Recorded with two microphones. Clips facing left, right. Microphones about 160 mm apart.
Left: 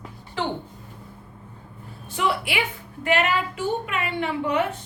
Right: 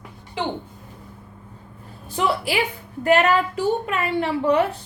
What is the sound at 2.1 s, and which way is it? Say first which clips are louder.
A woman's voice: right 3 dB; 35° right (ahead or behind).